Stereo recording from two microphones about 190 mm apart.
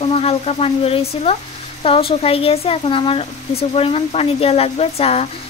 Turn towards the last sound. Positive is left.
turn(degrees=35)  # may be behind; listen again after turning